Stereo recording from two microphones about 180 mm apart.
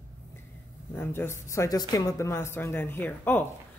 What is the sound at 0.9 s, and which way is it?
A woman's voice, 10° left (ahead or behind).